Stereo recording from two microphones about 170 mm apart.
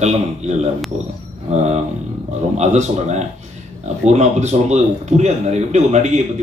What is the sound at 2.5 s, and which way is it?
A man's voice, 40° right (ahead or behind).